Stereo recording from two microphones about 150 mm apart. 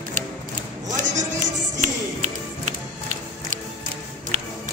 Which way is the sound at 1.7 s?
50° right (ahead or behind).